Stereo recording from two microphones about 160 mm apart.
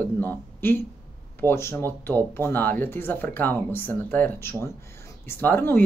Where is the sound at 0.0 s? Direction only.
10° left (ahead or behind).